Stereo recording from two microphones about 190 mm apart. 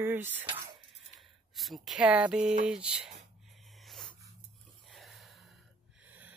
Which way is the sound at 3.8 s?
Centre (ahead or behind).